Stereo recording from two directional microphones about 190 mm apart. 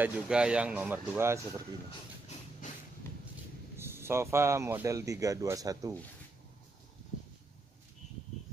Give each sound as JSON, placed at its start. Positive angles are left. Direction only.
{"t": 0.0, "sound": "speech", "side_deg": -5}
{"t": 3.7, "sound": "speech", "side_deg": -10}